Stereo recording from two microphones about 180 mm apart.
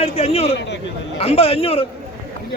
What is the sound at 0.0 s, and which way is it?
Speech, 35° left (ahead or behind).